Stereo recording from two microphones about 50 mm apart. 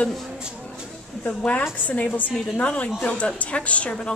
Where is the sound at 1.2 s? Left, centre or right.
Left.